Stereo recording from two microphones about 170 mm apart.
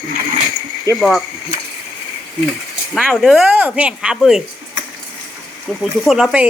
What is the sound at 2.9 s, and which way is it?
A woman's voice, centre (ahead or behind).